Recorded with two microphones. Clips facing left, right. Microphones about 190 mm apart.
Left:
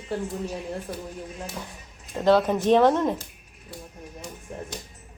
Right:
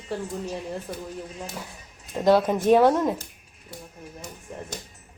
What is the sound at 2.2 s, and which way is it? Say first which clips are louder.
Speech: even; 10° right (ahead or behind).